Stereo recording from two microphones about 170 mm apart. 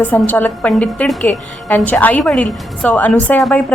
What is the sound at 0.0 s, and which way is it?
A woman's voice, 10° left (ahead or behind).